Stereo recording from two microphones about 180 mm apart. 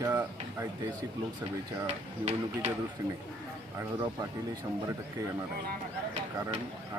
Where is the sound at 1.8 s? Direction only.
35° right (ahead or behind).